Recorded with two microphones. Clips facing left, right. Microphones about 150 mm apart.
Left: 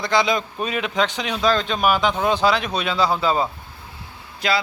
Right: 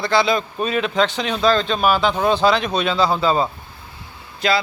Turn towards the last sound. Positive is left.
turn(degrees=10)  # may be behind; listen again after turning